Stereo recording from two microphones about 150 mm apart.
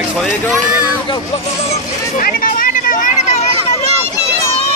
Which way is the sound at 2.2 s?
65° left (ahead or behind).